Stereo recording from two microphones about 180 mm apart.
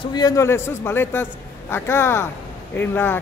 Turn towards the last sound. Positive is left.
turn(degrees=10)  # may be behind; listen again after turning